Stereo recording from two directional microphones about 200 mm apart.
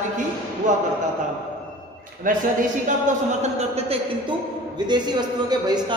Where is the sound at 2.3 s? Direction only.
40° right (ahead or behind).